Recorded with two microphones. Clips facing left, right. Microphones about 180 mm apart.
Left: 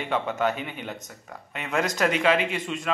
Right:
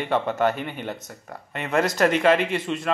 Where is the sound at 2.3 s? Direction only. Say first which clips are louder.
Right 3 dB; 5° left (ahead or behind).